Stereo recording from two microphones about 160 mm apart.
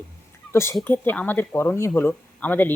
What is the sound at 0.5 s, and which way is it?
Speech, 15° left (ahead or behind).